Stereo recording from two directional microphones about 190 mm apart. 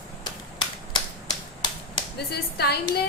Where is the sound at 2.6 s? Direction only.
60° left (ahead or behind).